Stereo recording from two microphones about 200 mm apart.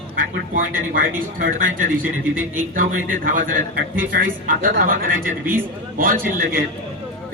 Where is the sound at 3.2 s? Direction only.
45° right (ahead or behind).